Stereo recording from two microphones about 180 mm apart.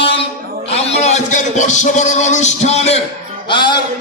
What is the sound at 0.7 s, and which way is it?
Music, 35° left (ahead or behind).